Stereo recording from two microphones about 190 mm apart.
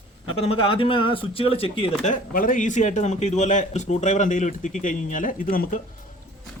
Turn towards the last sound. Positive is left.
turn(degrees=50)  # may be behind; listen again after turning